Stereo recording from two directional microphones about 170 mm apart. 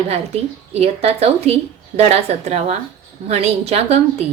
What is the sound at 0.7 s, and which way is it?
Speech, 35° right (ahead or behind).